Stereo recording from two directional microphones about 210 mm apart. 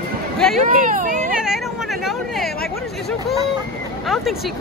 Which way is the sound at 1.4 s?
Centre (ahead or behind).